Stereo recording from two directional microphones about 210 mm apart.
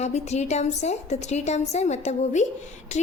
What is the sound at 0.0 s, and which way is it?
A woman's voice, 30° left (ahead or behind).